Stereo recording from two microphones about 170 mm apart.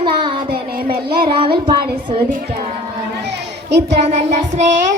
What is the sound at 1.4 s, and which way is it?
Child singing, 30° right (ahead or behind).